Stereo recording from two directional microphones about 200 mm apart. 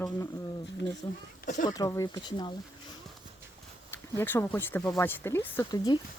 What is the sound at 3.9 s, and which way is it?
Speech, 10° left (ahead or behind).